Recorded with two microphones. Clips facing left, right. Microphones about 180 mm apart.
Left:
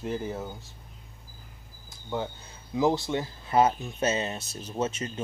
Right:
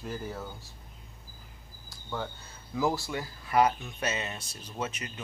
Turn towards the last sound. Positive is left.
turn(degrees=25)  # may be behind; listen again after turning